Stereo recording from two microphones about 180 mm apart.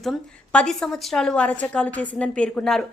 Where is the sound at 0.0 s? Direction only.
5° left (ahead or behind).